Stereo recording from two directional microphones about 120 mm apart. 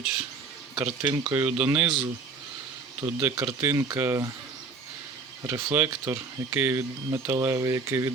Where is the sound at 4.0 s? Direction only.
25° right (ahead or behind).